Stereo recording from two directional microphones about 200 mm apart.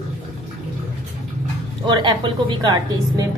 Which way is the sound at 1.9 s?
20° right (ahead or behind).